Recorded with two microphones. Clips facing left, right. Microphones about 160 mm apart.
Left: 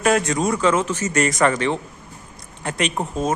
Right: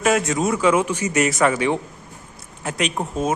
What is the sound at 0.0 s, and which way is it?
Speech, centre (ahead or behind).